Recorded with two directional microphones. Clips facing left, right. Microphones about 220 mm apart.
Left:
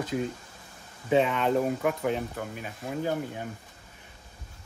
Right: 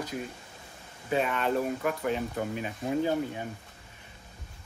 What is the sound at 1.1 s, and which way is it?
Speech, 20° left (ahead or behind).